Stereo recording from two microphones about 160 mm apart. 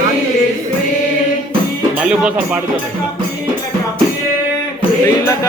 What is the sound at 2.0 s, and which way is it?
Speech, 10° right (ahead or behind).